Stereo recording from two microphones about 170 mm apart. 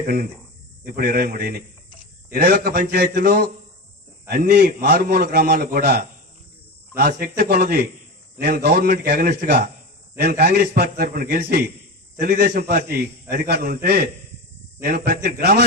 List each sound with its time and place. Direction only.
0.9 s a man's voice: 60° right (ahead or behind)